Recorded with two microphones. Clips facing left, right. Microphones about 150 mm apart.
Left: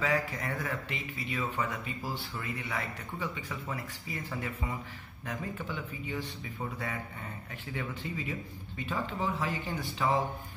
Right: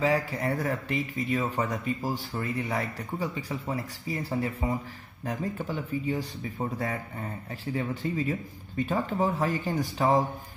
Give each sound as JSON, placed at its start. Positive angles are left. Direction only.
{"t": 0.0, "sound": "speech", "side_deg": -30}